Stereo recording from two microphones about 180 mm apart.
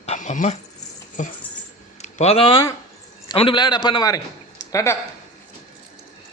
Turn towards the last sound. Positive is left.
turn(degrees=20)  # may be behind; listen again after turning